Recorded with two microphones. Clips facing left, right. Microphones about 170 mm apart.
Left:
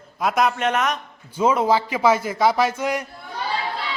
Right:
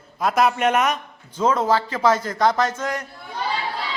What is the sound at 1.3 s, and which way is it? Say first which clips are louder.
A man's voice: left 1 dB; 10° left (ahead or behind).